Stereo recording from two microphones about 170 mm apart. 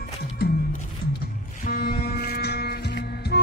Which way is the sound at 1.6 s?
60° left (ahead or behind).